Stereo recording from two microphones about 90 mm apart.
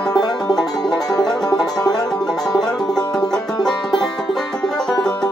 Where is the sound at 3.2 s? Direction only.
5° left (ahead or behind).